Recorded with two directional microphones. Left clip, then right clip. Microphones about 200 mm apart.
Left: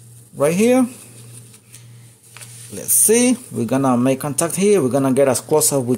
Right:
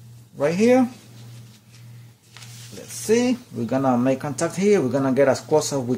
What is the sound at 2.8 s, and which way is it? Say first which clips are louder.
Speech: left 5 dB; 45° left (ahead or behind).